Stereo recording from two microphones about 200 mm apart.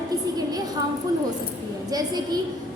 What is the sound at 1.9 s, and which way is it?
Speech, 20° right (ahead or behind).